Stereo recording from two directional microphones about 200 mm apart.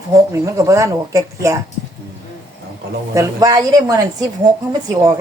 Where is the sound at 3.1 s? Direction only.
15° right (ahead or behind).